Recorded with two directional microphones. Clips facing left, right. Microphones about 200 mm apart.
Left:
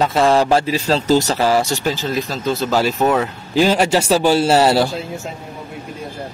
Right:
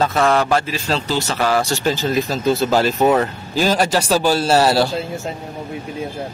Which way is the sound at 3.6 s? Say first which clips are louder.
Left 3 dB; 15° left (ahead or behind).